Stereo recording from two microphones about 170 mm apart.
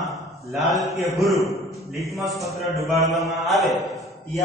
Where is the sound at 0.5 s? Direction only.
Centre (ahead or behind).